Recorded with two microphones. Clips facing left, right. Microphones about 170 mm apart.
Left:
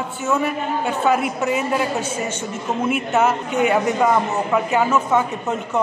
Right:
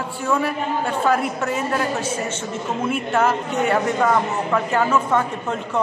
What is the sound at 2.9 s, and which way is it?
Speech, 5° left (ahead or behind).